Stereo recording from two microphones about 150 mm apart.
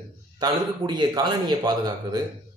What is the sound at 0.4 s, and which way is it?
Speech, 30° right (ahead or behind).